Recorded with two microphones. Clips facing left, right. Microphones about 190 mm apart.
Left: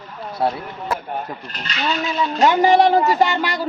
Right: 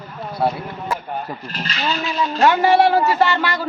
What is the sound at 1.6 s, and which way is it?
Speech, 35° right (ahead or behind).